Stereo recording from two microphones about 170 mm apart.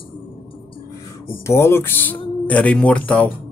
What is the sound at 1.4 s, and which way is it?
Speech, 15° left (ahead or behind).